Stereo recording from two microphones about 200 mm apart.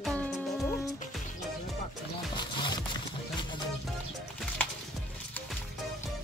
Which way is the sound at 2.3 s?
20° left (ahead or behind).